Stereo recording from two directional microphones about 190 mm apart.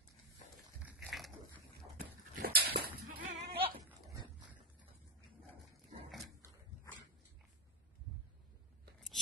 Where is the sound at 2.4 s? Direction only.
60° right (ahead or behind).